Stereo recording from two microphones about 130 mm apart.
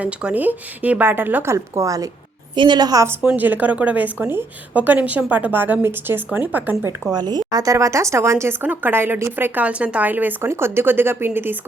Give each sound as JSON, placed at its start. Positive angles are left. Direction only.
{"t": 0.0, "sound": "a woman's voice", "side_deg": -10}
{"t": 3.1, "sound": "speech", "side_deg": -10}
{"t": 7.1, "sound": "speech", "side_deg": -30}